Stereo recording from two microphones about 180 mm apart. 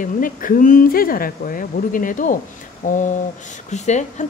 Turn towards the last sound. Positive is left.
turn(degrees=40)  # may be behind; listen again after turning